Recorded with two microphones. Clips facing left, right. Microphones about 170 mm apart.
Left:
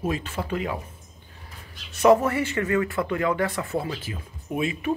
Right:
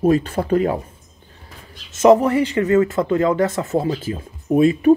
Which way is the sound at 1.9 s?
20° right (ahead or behind).